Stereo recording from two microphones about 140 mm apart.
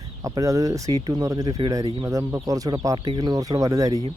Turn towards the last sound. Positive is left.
turn(degrees=-25)  # may be behind; listen again after turning